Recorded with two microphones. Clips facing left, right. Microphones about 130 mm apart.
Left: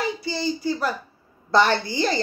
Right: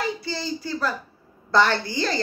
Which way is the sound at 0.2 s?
20° left (ahead or behind).